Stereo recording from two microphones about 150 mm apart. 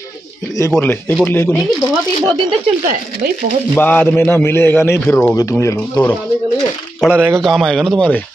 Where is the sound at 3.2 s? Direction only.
90° right.